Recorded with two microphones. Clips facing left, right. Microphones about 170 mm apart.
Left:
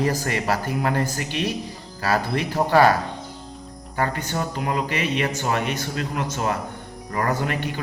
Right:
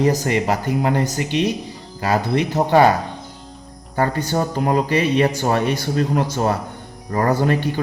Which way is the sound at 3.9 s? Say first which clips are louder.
Right 5 dB; 35° right (ahead or behind).